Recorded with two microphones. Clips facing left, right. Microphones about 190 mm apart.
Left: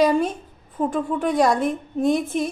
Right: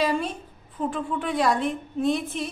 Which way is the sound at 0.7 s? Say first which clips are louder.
Left 5 dB; 45° left (ahead or behind).